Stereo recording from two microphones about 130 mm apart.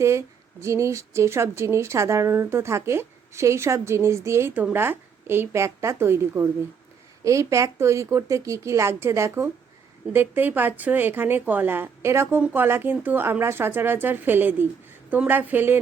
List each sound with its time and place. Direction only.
0.0 s speech: 20° right (ahead or behind)